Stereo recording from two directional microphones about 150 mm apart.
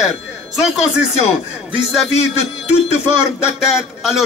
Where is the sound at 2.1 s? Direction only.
45° left (ahead or behind).